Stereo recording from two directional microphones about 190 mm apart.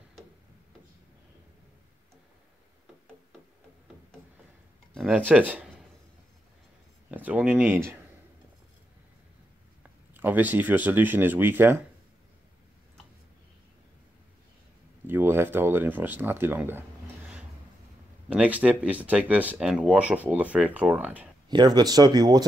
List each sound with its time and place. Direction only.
4.9 s speech: 5° right (ahead or behind)
7.1 s speech: 10° right (ahead or behind)
9.8 s speech: 10° right (ahead or behind)
15.0 s a sound: 10° right (ahead or behind)
18.3 s speech: 5° right (ahead or behind)
21.5 s speech: 20° right (ahead or behind)